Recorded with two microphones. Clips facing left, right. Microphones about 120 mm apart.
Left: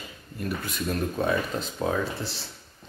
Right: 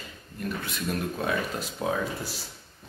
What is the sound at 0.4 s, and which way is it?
Speech, centre (ahead or behind).